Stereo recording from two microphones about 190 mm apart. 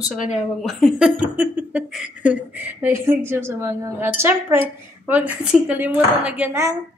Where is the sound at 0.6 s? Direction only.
Centre (ahead or behind).